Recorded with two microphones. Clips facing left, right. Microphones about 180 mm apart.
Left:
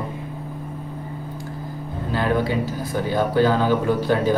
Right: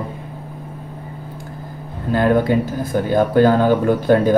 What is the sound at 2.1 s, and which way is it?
Speech, 50° right (ahead or behind).